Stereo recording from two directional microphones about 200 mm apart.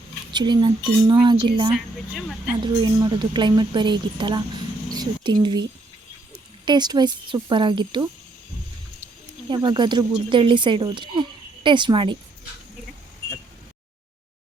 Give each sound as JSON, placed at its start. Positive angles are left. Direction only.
{"t": 0.3, "sound": "speech", "side_deg": -20}
{"t": 1.7, "sound": "speech", "side_deg": 0}
{"t": 3.0, "sound": "speech", "side_deg": -25}
{"t": 6.7, "sound": "speech", "side_deg": -20}
{"t": 9.5, "sound": "speech", "side_deg": -20}